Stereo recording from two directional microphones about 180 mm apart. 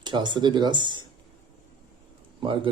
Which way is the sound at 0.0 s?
25° right (ahead or behind).